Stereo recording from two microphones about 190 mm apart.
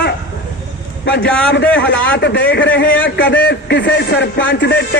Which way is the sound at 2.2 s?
65° left (ahead or behind).